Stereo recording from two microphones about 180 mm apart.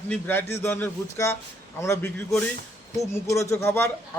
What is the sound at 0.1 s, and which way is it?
A man's voice, 10° left (ahead or behind).